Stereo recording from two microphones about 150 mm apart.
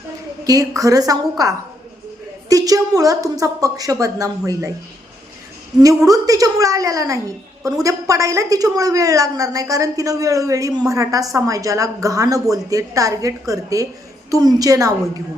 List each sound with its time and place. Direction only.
0.4 s a woman's voice: 25° right (ahead or behind)
5.8 s a woman's voice: 20° right (ahead or behind)